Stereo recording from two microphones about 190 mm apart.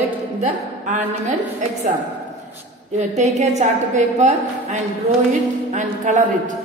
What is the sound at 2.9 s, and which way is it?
A woman's voice, 35° right (ahead or behind).